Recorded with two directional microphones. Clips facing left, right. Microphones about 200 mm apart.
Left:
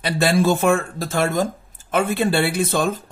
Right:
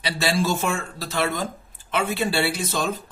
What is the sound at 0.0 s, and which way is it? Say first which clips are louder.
Speech: left 6 dB; 50° left (ahead or behind).